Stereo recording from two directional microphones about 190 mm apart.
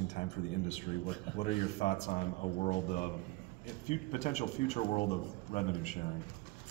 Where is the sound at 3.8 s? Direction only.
35° left (ahead or behind).